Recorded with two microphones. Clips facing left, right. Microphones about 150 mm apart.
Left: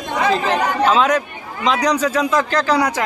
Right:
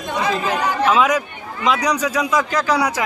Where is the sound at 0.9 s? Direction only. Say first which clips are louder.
Left 1 dB; 5° right (ahead or behind).